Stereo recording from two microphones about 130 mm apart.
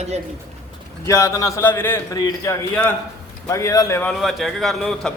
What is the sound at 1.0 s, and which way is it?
Speech, 25° left (ahead or behind).